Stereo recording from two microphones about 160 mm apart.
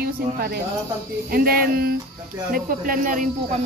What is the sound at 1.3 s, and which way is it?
Speech, 65° right (ahead or behind).